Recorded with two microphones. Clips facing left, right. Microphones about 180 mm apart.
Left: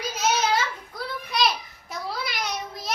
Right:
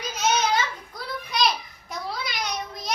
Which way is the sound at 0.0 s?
5° left (ahead or behind).